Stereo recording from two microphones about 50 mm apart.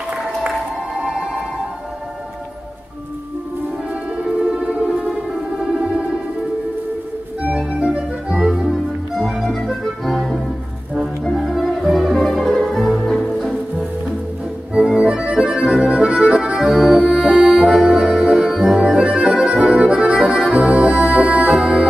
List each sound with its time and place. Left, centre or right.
1.0 s music: centre
4.2 s music: right
7.5 s music: right
8.5 s music: centre
11.2 s music: centre
14.7 s accordion: centre
17.8 s music: right
18.2 s organ: centre
18.8 s accordion: centre
20.5 s music: right